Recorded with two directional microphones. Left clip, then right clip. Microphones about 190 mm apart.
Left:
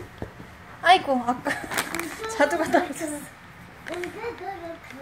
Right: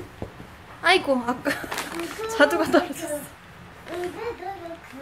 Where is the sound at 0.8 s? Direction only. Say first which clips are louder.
Left 1 dB; 15° right (ahead or behind).